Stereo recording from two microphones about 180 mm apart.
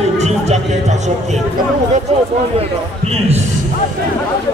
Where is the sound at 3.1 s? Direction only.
35° right (ahead or behind).